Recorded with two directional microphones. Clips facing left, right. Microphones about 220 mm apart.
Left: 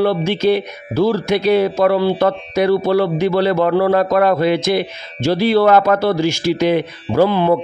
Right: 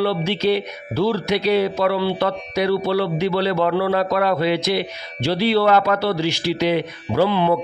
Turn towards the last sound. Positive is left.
turn(degrees=45)  # may be behind; listen again after turning